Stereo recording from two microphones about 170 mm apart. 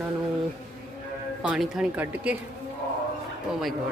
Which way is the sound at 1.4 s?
5° right (ahead or behind).